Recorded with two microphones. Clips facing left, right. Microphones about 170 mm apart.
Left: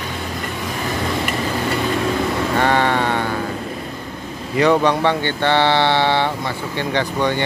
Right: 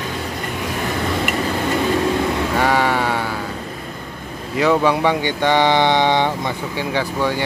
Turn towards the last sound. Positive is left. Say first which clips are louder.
# left 1 dB
turn(degrees=-5)  # may be behind; listen again after turning